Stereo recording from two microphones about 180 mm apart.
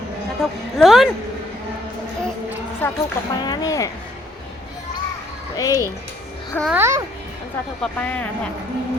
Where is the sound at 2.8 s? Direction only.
10° left (ahead or behind).